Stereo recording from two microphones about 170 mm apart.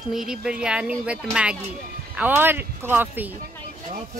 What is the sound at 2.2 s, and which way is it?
Speech, 10° right (ahead or behind).